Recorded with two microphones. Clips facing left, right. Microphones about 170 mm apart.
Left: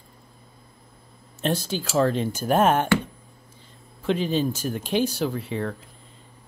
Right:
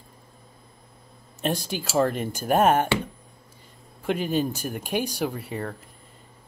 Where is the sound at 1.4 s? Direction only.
15° right (ahead or behind).